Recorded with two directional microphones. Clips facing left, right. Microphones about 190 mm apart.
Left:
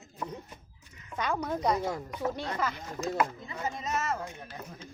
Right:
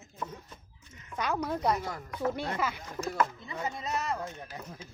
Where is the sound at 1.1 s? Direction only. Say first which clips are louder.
Even; 5° right (ahead or behind).